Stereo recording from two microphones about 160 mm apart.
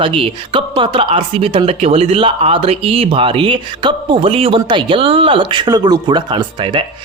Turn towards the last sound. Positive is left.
turn(degrees=-30)  # may be behind; listen again after turning